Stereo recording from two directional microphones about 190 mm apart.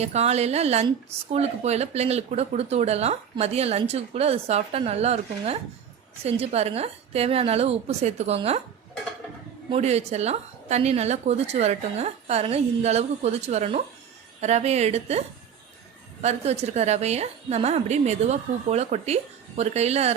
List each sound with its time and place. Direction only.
0.0 s speech: 35° right (ahead or behind)
9.6 s speech: 35° right (ahead or behind)
16.2 s speech: 35° right (ahead or behind)